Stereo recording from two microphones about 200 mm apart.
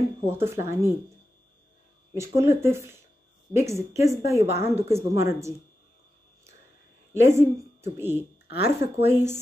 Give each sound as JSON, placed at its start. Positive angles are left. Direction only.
{"t": 0.3, "sound": "a woman's voice", "side_deg": -10}
{"t": 2.1, "sound": "a woman's voice", "side_deg": -15}
{"t": 7.2, "sound": "a woman's voice", "side_deg": -15}
{"t": 8.5, "sound": "speech", "side_deg": 55}